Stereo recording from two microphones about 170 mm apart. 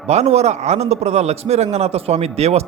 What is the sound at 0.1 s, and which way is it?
A man's voice, 40° right (ahead or behind).